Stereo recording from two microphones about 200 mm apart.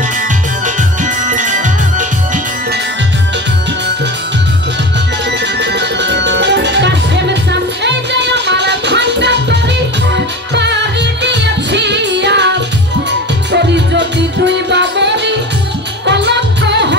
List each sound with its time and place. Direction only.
0.7 s music: 40° right (ahead or behind)
5.4 s music: 60° right (ahead or behind)